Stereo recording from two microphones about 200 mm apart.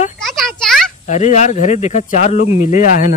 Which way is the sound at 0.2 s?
Centre (ahead or behind).